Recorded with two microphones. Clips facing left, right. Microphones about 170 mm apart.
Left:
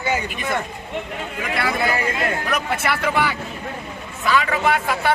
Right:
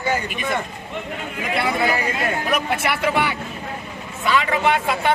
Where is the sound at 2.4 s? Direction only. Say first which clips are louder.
Right 1 dB; 15° right (ahead or behind).